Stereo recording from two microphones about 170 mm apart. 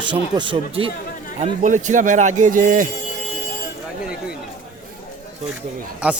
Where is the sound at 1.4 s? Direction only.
45° right (ahead or behind).